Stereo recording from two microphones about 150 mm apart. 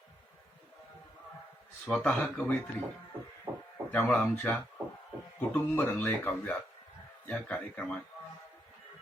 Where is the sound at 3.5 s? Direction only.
15° right (ahead or behind).